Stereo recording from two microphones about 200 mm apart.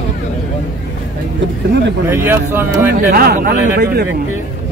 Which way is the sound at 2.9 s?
50° right (ahead or behind).